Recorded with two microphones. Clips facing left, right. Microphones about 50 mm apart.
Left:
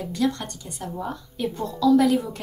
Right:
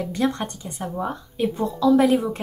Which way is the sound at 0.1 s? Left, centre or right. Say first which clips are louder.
Left 1 dB; right.